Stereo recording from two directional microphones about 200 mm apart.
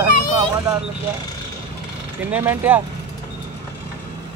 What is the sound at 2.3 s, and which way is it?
Speech, 10° right (ahead or behind).